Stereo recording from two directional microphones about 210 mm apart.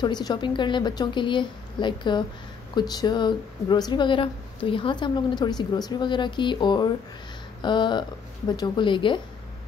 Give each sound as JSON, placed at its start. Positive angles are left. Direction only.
{"t": 0.0, "sound": "speech", "side_deg": 20}